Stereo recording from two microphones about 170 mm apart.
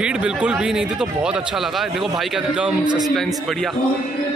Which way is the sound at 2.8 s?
25° right (ahead or behind).